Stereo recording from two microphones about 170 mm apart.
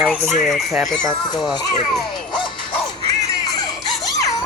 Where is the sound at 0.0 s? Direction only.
Centre (ahead or behind).